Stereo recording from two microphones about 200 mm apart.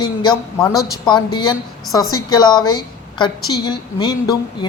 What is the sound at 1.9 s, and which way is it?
Speech, 20° left (ahead or behind).